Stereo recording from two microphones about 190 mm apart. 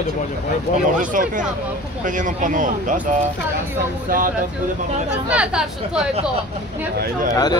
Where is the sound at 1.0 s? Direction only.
45° right (ahead or behind).